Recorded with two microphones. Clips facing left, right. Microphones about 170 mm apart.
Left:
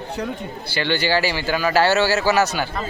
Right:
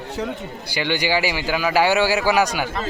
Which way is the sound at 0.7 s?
15° right (ahead or behind).